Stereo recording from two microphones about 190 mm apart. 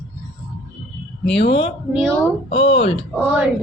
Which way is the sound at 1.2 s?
65° left (ahead or behind).